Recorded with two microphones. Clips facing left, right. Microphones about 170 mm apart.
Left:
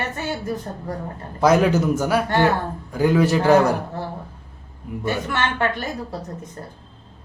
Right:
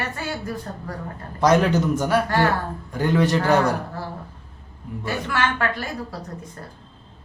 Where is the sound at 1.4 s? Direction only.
5° left (ahead or behind).